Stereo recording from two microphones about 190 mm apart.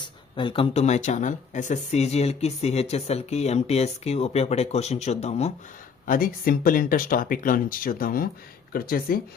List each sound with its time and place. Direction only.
0.0 s speech: 25° left (ahead or behind)
6.1 s speech: 50° left (ahead or behind)